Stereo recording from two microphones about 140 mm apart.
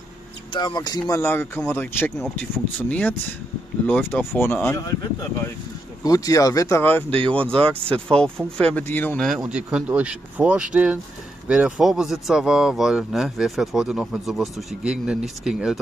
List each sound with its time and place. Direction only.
0.5 s speech: 35° left (ahead or behind)
1.2 s speech: 15° left (ahead or behind)
6.0 s speech: 25° left (ahead or behind); by 9.4 s 5° left (ahead or behind)
9.5 s speech: 5° right (ahead or behind)